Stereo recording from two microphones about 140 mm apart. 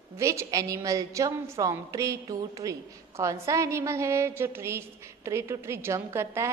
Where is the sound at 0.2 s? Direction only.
20° right (ahead or behind).